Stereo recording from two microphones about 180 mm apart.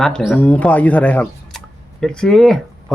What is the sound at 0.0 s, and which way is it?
Speech, 5° left (ahead or behind).